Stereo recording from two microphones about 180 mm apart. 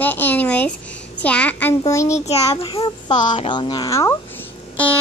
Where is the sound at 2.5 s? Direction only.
30° left (ahead or behind).